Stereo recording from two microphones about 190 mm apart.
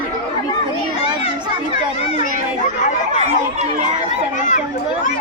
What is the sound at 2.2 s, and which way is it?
Chatter, 40° left (ahead or behind).